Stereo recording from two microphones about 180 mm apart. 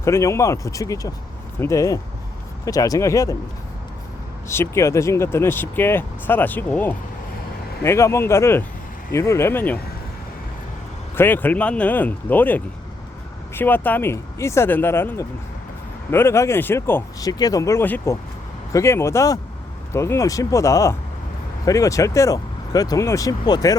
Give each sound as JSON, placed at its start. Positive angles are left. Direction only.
{"t": 0.0, "sound": "speech", "side_deg": 15}
{"t": 4.4, "sound": "speech", "side_deg": 15}
{"t": 11.1, "sound": "speech", "side_deg": 10}